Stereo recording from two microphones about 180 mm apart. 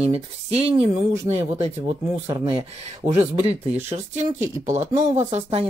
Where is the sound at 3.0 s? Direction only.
35° right (ahead or behind).